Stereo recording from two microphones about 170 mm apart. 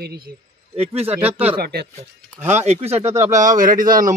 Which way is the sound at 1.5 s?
65° right (ahead or behind).